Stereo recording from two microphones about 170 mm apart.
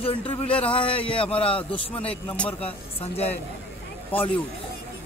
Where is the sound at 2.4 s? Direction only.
5° left (ahead or behind).